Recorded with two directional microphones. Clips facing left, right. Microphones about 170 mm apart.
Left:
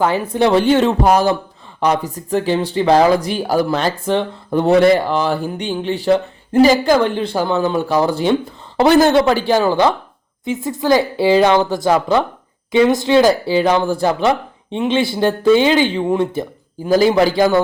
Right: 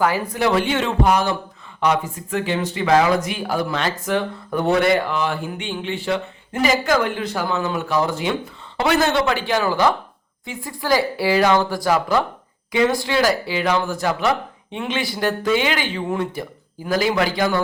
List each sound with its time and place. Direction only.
0.0 s speech: 25° left (ahead or behind)